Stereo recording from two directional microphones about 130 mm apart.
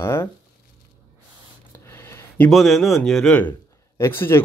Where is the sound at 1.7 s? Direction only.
20° left (ahead or behind).